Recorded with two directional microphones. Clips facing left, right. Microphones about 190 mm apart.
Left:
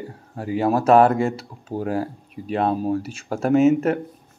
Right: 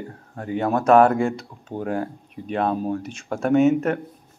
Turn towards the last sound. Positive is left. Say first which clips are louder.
# left 1 dB
turn(degrees=5)  # may be behind; listen again after turning